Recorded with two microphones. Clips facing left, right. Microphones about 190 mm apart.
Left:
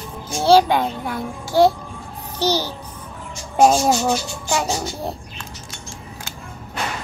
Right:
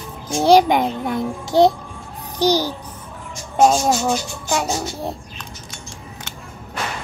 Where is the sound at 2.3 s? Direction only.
15° right (ahead or behind).